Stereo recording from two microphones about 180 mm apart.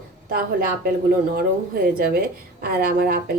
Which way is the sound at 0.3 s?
55° right (ahead or behind).